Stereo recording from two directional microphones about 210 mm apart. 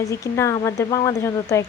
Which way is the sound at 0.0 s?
15° left (ahead or behind).